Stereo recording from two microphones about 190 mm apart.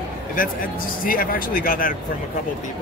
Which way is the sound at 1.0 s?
50° left (ahead or behind).